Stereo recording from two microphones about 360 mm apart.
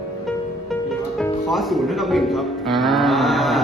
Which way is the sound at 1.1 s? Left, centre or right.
Centre.